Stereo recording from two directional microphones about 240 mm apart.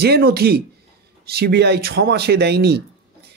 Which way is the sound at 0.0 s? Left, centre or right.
Right.